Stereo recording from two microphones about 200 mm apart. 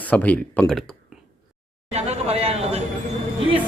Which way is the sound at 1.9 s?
30° right (ahead or behind).